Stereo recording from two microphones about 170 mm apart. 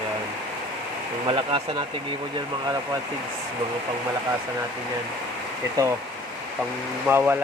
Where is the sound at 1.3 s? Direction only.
30° right (ahead or behind).